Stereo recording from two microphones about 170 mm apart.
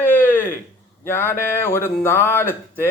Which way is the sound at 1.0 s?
15° left (ahead or behind).